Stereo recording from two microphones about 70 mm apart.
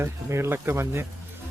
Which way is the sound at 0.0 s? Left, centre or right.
Right.